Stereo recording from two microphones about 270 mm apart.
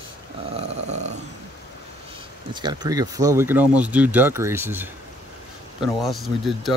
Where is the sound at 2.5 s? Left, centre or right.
Centre.